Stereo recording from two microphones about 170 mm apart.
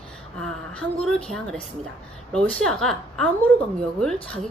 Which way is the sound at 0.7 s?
5° left (ahead or behind).